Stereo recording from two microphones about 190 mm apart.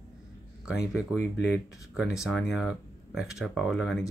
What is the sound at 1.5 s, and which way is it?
Speech, 15° left (ahead or behind).